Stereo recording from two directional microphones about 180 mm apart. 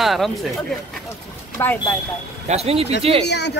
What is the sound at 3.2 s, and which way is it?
Speech, 70° left (ahead or behind).